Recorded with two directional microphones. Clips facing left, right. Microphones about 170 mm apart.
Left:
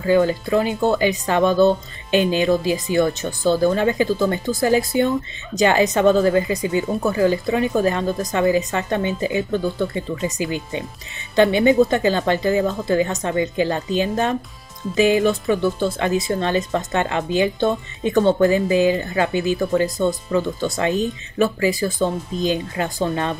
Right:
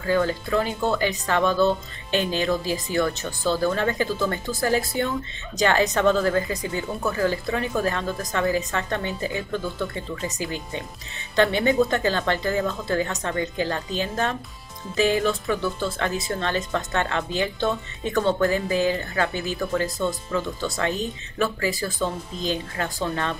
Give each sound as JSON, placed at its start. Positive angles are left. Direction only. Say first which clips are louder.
{"t": 0.0, "sound": "speech", "louder": "left 6 dB", "side_deg": 15}